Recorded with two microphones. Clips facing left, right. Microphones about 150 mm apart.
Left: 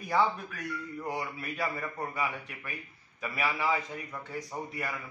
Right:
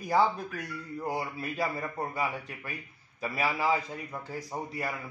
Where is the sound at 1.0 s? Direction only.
30° right (ahead or behind).